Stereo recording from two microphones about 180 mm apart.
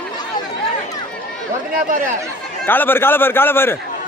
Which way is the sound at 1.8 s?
50° right (ahead or behind).